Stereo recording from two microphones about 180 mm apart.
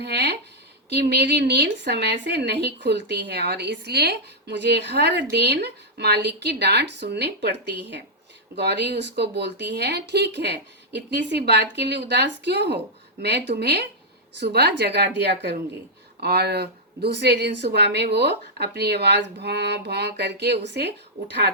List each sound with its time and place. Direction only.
0.0 s a woman's voice: 65° right (ahead or behind)